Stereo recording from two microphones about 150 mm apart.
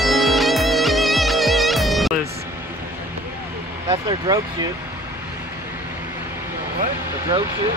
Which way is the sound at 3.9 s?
30° right (ahead or behind).